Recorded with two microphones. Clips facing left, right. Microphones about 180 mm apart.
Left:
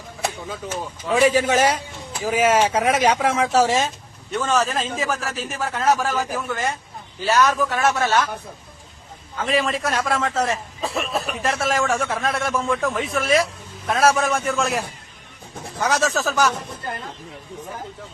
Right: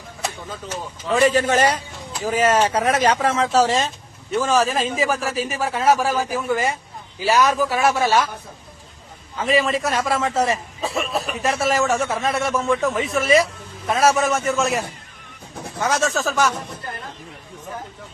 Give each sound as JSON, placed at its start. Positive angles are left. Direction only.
{"t": 1.0, "sound": "a man's voice", "side_deg": 10}
{"t": 9.4, "sound": "a man's voice", "side_deg": 0}